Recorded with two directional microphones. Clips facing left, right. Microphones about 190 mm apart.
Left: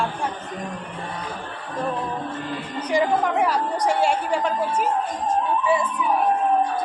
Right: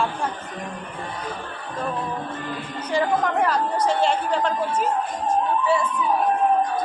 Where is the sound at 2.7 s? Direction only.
15° left (ahead or behind).